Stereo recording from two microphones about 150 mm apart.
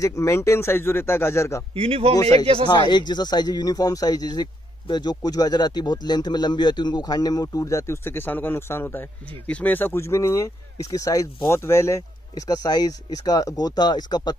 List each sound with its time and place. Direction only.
0.0 s a man's voice: 20° left (ahead or behind)
1.8 s speech: 40° right (ahead or behind)
2.1 s speech: 25° left (ahead or behind)
2.4 s speech: 40° right (ahead or behind)
2.7 s speech: 30° left (ahead or behind)